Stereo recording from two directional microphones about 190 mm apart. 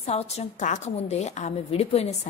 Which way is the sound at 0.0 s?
35° left (ahead or behind).